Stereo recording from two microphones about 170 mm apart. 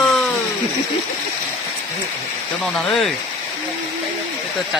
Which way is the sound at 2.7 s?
5° left (ahead or behind).